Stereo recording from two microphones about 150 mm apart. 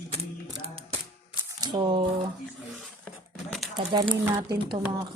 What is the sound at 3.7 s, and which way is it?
Speech, 30° right (ahead or behind).